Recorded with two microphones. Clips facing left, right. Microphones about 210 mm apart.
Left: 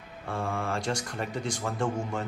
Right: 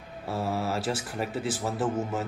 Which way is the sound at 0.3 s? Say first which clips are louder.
Right 2 dB; 5° right (ahead or behind).